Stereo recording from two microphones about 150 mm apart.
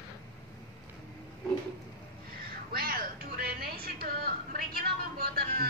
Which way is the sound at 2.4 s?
85° right.